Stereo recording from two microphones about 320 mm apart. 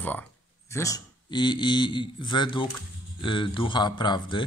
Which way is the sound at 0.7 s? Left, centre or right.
Centre.